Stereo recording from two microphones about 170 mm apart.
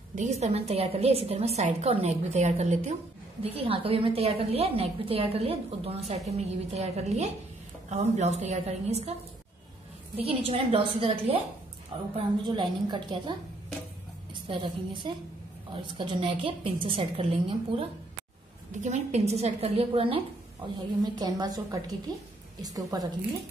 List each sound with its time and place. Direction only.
0.1 s a woman's voice: 40° right (ahead or behind)
10.1 s a woman's voice: 35° right (ahead or behind)
14.5 s a woman's voice: 30° right (ahead or behind)
18.7 s a woman's voice: 45° right (ahead or behind); by 23.0 s 20° right (ahead or behind)